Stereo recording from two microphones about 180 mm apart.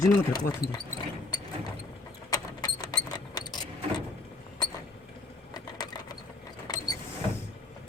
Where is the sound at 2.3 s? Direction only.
20° left (ahead or behind).